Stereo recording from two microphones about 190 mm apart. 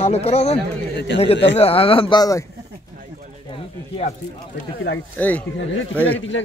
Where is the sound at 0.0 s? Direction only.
35° left (ahead or behind).